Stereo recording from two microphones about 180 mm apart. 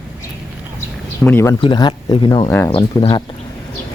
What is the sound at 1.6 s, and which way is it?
Speech, 25° left (ahead or behind).